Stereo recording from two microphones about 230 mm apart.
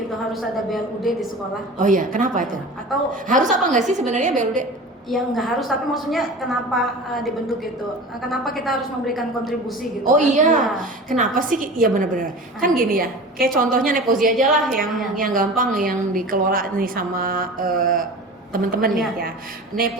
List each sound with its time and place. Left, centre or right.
1.8 s a woman's voice: right
5.0 s a woman's voice: centre
10.1 s a woman's voice: right
14.3 s a woman's voice: centre
15.1 s a woman's voice: right